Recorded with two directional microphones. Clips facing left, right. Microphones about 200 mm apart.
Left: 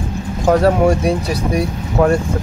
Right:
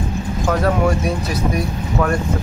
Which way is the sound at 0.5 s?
30° left (ahead or behind).